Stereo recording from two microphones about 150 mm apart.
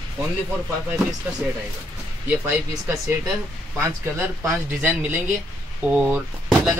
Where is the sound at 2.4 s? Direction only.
15° right (ahead or behind).